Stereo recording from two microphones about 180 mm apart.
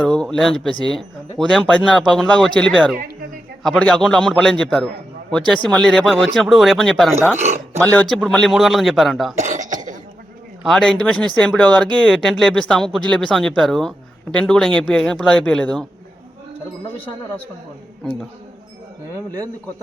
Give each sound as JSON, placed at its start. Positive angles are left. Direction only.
{"t": 0.2, "sound": "speech", "side_deg": 0}
{"t": 7.3, "sound": "a sound", "side_deg": -40}
{"t": 7.8, "sound": "speech", "side_deg": 10}
{"t": 9.4, "sound": "cough", "side_deg": -45}
{"t": 10.6, "sound": "speech", "side_deg": 0}